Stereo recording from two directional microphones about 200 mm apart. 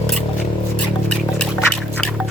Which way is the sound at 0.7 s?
5° left (ahead or behind).